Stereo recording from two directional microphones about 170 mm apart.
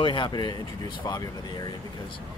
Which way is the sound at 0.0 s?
30° left (ahead or behind).